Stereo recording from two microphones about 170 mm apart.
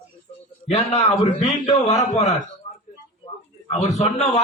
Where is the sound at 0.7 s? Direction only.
40° left (ahead or behind).